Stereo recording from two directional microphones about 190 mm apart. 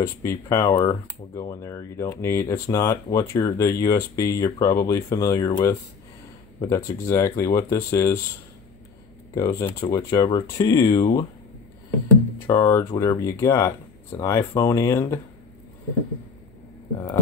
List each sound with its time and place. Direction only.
0.0 s speech: 15° left (ahead or behind)
9.3 s speech: 15° left (ahead or behind)
12.4 s speech: 20° left (ahead or behind)